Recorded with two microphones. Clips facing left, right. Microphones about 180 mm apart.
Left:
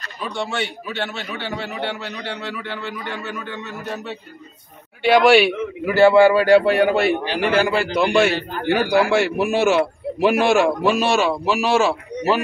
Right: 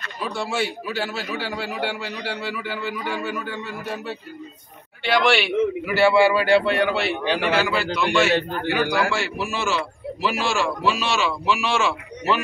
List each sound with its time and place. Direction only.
0.2 s a man's voice: 5° right (ahead or behind)
5.1 s a man's voice: 45° left (ahead or behind)